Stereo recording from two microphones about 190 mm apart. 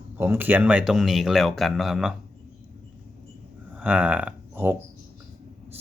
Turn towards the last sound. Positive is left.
turn(degrees=-10)  # may be behind; listen again after turning